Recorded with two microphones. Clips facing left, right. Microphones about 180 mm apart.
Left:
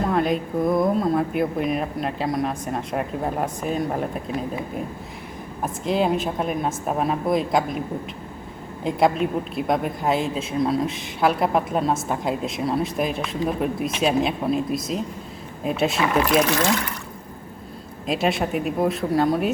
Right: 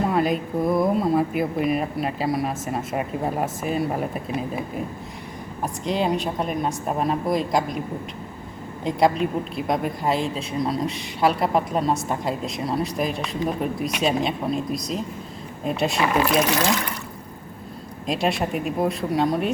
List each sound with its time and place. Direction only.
0.1 s speech: 5° right (ahead or behind)
5.6 s speech: centre (ahead or behind)
8.8 s speech: centre (ahead or behind)
18.0 s speech: centre (ahead or behind)